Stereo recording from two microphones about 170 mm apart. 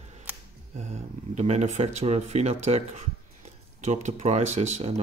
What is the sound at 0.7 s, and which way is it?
Speech, 40° right (ahead or behind).